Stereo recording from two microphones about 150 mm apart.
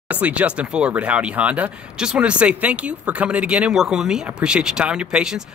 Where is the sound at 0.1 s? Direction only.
10° right (ahead or behind).